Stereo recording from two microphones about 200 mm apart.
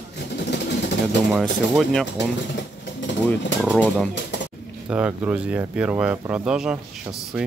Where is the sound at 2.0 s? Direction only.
60° left (ahead or behind).